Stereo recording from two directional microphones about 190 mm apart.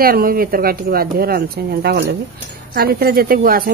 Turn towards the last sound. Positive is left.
turn(degrees=-50)  # may be behind; listen again after turning